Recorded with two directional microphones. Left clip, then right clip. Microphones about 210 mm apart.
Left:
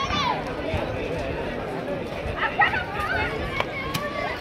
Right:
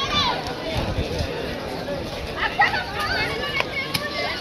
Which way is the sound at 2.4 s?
40° left (ahead or behind).